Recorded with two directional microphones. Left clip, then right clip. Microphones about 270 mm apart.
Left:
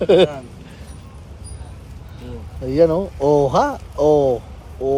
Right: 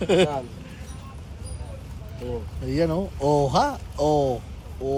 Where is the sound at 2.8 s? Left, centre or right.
Left.